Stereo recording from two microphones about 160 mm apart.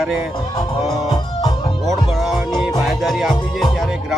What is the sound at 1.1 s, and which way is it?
Music, 30° left (ahead or behind).